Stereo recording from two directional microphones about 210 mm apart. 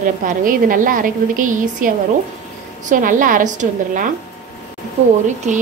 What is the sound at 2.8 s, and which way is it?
A woman's voice, 40° right (ahead or behind).